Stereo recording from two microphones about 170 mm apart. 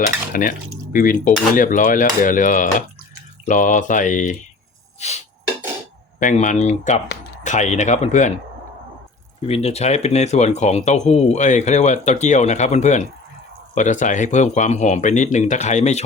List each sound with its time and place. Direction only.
0.3 s cutlery: 55° left (ahead or behind)
0.9 s speech: 50° left (ahead or behind)
4.9 s a sound: 40° left (ahead or behind)
6.1 s speech: 45° left (ahead or behind)
9.5 s speech: 35° left (ahead or behind)